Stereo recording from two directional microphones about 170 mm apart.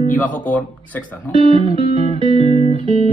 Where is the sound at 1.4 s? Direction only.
35° right (ahead or behind).